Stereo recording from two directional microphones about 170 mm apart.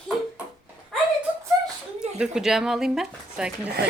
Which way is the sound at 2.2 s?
5° right (ahead or behind).